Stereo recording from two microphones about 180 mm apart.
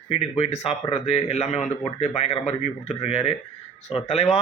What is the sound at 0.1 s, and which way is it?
Speech, 35° left (ahead or behind).